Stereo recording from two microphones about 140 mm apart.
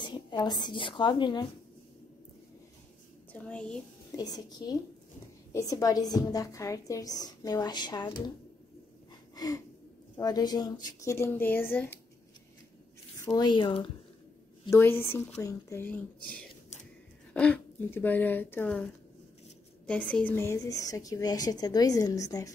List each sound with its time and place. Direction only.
0.0 s a woman's voice: 30° left (ahead or behind)
3.3 s a woman's voice: 10° left (ahead or behind)
4.2 s a woman's voice: 30° left (ahead or behind)
9.3 s a sound: 25° left (ahead or behind)
10.1 s a woman's voice: 30° left (ahead or behind); by 12.0 s 15° left (ahead or behind)
13.2 s a woman's voice: 30° left (ahead or behind)
14.7 s speech: 15° left (ahead or behind)
17.3 s speech: 10° left (ahead or behind)
19.9 s a woman's voice: 10° left (ahead or behind)